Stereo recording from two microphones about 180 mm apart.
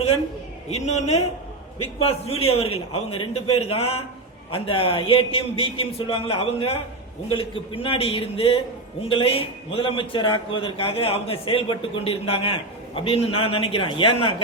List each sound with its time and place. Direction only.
0.7 s a man's voice: 40° left (ahead or behind)